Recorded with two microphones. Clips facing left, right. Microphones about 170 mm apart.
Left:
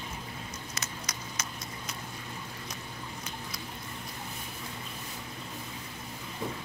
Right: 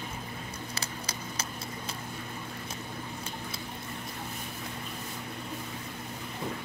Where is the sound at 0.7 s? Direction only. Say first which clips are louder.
Right 2 dB; 30° right (ahead or behind).